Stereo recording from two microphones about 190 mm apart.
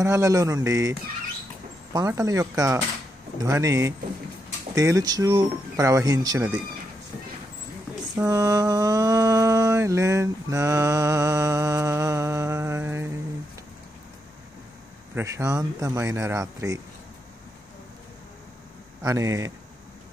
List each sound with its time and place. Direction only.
0.0 s mantra: 15° right (ahead or behind)
2.0 s mantra: 15° right (ahead or behind)
8.2 s mantra: 15° right (ahead or behind)
15.1 s mantra: 15° right (ahead or behind)
19.0 s mantra: 15° right (ahead or behind)